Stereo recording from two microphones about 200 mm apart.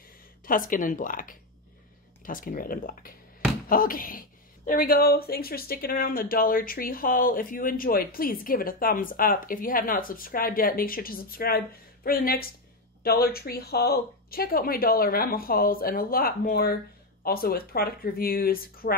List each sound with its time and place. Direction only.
0.5 s speech: 40° left (ahead or behind)